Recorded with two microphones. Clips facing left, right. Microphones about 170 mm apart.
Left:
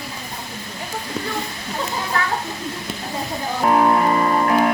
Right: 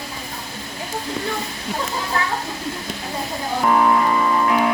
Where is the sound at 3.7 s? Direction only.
45° left (ahead or behind).